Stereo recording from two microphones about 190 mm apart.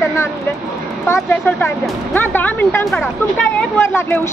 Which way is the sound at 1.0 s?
15° left (ahead or behind).